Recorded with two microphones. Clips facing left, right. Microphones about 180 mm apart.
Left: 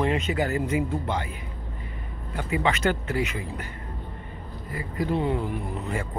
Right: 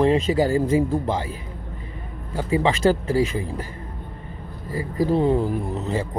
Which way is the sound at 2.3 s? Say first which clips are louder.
Right 5 dB; 30° right (ahead or behind).